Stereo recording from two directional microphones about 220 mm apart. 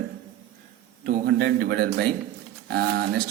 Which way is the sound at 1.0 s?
45° right (ahead or behind).